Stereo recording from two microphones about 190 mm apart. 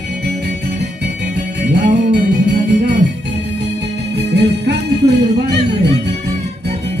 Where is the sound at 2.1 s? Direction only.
65° right (ahead or behind).